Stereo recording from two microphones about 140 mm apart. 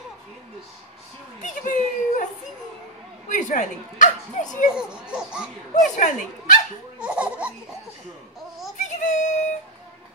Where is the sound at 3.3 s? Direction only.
65° left (ahead or behind).